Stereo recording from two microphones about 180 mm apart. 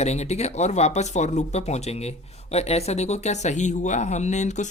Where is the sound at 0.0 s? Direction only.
35° left (ahead or behind).